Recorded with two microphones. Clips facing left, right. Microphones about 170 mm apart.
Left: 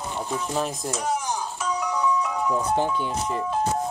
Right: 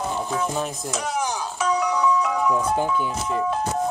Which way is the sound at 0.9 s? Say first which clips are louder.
Right 1 dB; 80° right.